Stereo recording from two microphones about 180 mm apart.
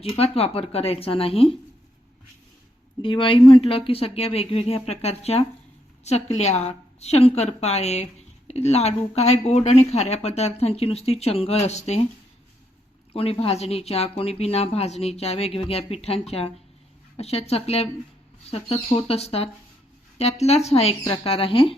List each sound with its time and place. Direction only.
0.0 s speech: 35° left (ahead or behind)
3.0 s speech: 30° left (ahead or behind)
13.1 s speech: 30° left (ahead or behind)